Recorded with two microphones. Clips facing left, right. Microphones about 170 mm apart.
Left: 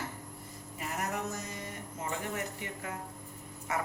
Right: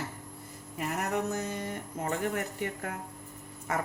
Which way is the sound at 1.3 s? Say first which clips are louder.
Right 7 dB; 60° right (ahead or behind).